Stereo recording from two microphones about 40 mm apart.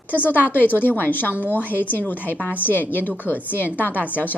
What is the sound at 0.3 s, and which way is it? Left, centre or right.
A woman's voice, left.